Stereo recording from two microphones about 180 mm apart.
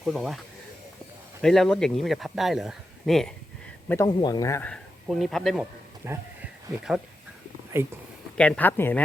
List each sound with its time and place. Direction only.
0.0 s speech: centre (ahead or behind)
1.4 s speech: 5° left (ahead or behind)
3.8 s speech: 15° left (ahead or behind)
4.7 s speech: centre (ahead or behind)
6.1 s a sound: 5° right (ahead or behind)
7.7 s speech: 15° right (ahead or behind)
8.4 s speech: 5° left (ahead or behind)